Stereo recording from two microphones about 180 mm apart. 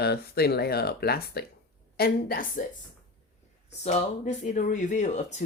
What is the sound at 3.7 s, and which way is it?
Speech, 40° left (ahead or behind).